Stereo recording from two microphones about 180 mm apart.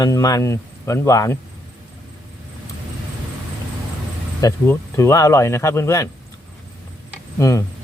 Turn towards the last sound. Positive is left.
turn(degrees=15)  # may be behind; listen again after turning